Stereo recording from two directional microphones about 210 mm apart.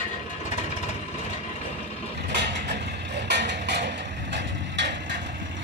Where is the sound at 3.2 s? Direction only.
55° right (ahead or behind).